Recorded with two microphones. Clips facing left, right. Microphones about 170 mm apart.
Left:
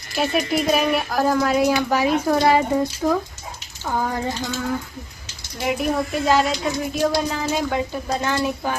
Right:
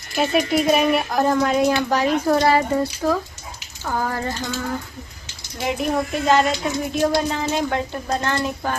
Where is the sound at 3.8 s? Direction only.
15° left (ahead or behind).